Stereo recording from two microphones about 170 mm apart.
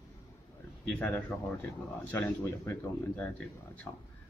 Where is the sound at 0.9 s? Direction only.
10° left (ahead or behind).